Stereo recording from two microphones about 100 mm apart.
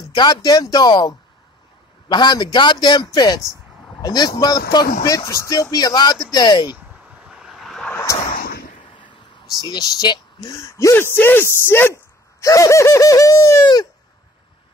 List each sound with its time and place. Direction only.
0.1 s speech: 50° left (ahead or behind)
7.2 s vehicle: 5° right (ahead or behind)
9.7 s speech: 40° left (ahead or behind)
10.6 s speech: 30° left (ahead or behind)